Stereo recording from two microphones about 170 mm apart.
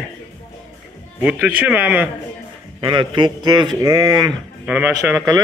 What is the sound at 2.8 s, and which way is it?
A man's voice, 30° right (ahead or behind).